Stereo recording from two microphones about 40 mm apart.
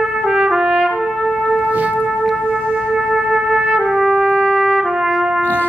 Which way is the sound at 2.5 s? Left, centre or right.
Right.